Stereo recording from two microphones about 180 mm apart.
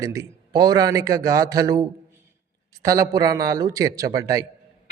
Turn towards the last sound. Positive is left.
turn(degrees=-20)  # may be behind; listen again after turning